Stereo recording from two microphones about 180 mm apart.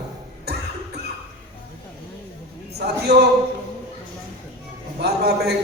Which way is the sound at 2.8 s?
70° right (ahead or behind).